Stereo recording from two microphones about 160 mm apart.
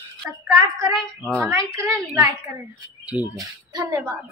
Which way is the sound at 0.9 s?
Centre (ahead or behind).